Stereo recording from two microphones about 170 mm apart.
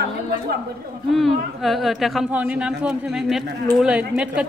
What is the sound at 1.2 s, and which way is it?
A woman's voice, centre (ahead or behind).